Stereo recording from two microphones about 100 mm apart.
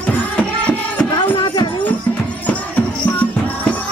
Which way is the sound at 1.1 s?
50° left (ahead or behind).